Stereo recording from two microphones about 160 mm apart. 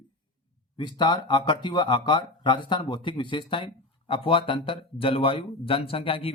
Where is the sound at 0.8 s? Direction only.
30° left (ahead or behind).